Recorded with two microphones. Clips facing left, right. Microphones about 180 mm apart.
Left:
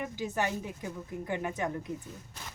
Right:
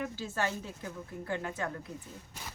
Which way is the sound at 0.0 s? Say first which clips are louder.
Left 2 dB; 15° left (ahead or behind).